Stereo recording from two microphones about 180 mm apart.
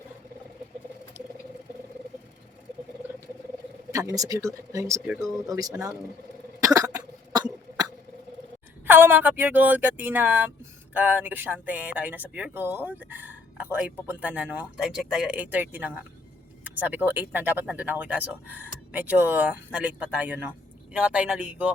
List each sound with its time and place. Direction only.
3.9 s speech: 20° right (ahead or behind)
5.0 s speech: 5° right (ahead or behind)
5.5 s speech: 20° right (ahead or behind)
6.6 s cough: 20° right (ahead or behind)
8.9 s speech: 10° right (ahead or behind)